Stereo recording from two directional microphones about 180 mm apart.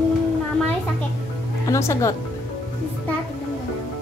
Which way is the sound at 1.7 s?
15° left (ahead or behind).